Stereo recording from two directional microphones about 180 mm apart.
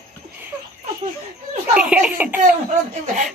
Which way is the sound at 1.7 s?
5° right (ahead or behind).